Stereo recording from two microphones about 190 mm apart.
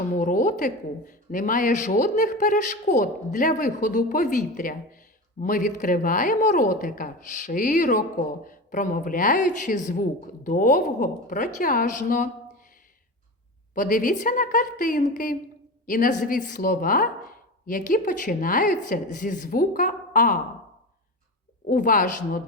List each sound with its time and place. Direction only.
0.1 s speech: 45° left (ahead or behind)
13.7 s speech: 45° left (ahead or behind)
21.7 s speech: 45° left (ahead or behind)